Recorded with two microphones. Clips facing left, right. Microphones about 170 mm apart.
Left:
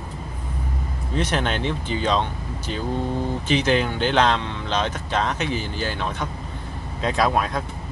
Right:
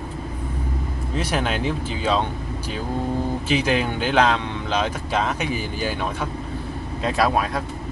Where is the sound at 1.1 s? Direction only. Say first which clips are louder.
Left 1 dB; 5° right (ahead or behind).